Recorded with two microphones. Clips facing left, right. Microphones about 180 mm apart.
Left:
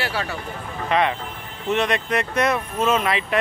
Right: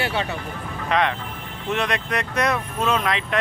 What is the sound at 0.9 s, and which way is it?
Speech, 5° left (ahead or behind).